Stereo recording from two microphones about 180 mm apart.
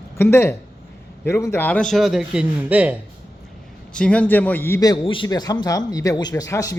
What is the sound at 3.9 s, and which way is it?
A man's voice, 5° left (ahead or behind).